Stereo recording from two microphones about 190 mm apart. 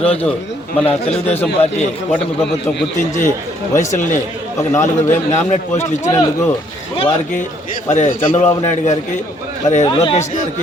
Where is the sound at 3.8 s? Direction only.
40° left (ahead or behind).